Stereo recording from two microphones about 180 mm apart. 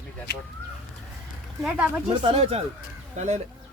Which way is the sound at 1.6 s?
10° right (ahead or behind).